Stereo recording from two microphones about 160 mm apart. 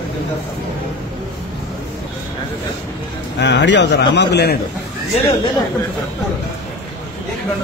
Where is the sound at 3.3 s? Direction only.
90° left.